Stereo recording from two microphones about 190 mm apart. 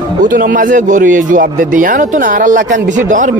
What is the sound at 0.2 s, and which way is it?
A man's voice, 45° right (ahead or behind).